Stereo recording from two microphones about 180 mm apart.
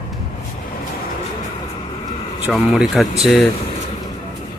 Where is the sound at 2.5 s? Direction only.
Centre (ahead or behind).